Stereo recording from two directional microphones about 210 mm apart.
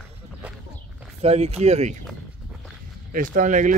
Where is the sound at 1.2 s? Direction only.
30° right (ahead or behind).